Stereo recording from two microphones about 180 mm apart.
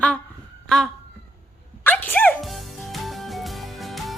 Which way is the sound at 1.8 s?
10° left (ahead or behind).